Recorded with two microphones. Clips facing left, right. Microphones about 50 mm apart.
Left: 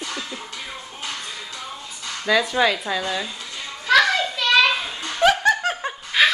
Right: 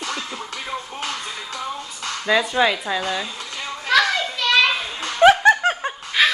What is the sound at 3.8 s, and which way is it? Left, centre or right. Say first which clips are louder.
Children playing: left 1 dB; centre.